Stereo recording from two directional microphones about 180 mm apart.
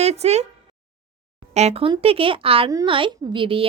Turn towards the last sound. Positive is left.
turn(degrees=-30)  # may be behind; listen again after turning